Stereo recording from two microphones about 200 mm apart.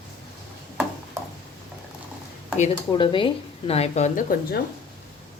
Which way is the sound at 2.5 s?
30° left (ahead or behind).